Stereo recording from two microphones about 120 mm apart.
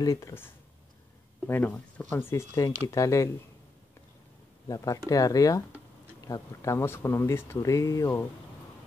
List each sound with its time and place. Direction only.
0.0 s speech: 25° left (ahead or behind)
1.5 s speech: 15° left (ahead or behind)
4.6 s speech: 30° left (ahead or behind)